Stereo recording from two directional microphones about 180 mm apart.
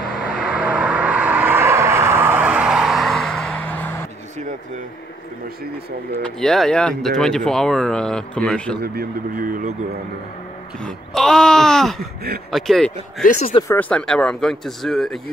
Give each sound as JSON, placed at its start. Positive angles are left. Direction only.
{"t": 0.2, "sound": "vehicle", "side_deg": -5}
{"t": 6.2, "sound": "speech", "side_deg": 0}
{"t": 8.8, "sound": "speech", "side_deg": -55}
{"t": 10.8, "sound": "speech", "side_deg": 5}